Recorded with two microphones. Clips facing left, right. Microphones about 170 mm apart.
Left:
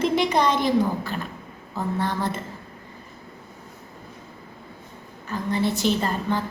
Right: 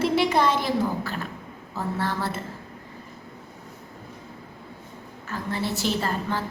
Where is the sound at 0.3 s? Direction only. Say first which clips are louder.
Left 2 dB; 20° left (ahead or behind).